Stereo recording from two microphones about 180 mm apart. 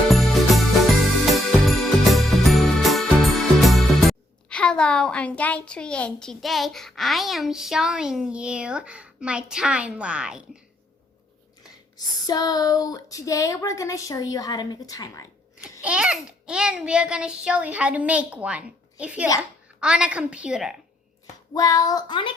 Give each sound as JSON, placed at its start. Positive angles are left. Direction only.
{"t": 0.1, "sound": "music", "side_deg": 0}
{"t": 4.4, "sound": "a woman's voice", "side_deg": 5}
{"t": 11.6, "sound": "speech", "side_deg": 20}
{"t": 15.8, "sound": "a child's voice", "side_deg": -5}
{"t": 21.5, "sound": "speech", "side_deg": 20}